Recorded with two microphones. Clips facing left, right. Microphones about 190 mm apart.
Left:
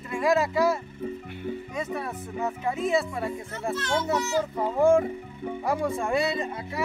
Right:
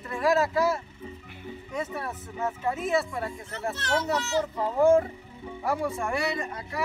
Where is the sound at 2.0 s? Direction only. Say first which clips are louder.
Left 2 dB; 15° left (ahead or behind).